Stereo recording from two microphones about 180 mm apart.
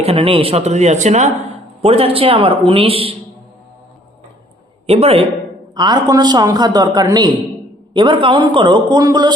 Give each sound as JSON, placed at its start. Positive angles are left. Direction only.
{"t": 0.0, "sound": "speech", "side_deg": -30}
{"t": 4.9, "sound": "speech", "side_deg": -35}
{"t": 5.7, "sound": "a man's voice", "side_deg": -25}